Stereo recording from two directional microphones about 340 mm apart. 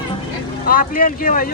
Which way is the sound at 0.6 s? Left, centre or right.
Left.